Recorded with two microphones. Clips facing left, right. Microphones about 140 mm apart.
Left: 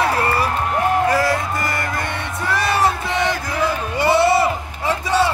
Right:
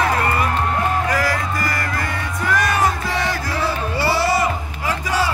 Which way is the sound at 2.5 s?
30° left (ahead or behind).